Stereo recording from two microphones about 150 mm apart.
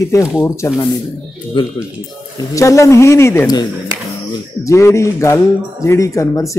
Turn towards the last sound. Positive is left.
turn(degrees=20)  # may be behind; listen again after turning